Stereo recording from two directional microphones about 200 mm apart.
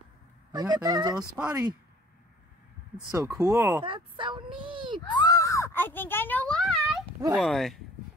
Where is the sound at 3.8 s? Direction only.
25° right (ahead or behind).